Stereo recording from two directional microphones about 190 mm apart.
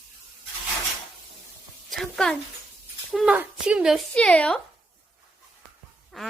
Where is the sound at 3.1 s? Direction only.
5° right (ahead or behind).